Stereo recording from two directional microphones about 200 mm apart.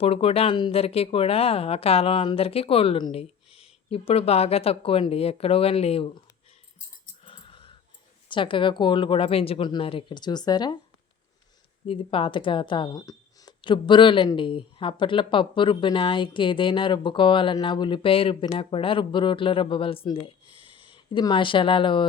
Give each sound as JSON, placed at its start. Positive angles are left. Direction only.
{"t": 0.0, "sound": "a woman's voice", "side_deg": 30}
{"t": 7.3, "sound": "dog", "side_deg": 25}
{"t": 8.3, "sound": "a woman's voice", "side_deg": 25}
{"t": 11.9, "sound": "a woman's voice", "side_deg": 25}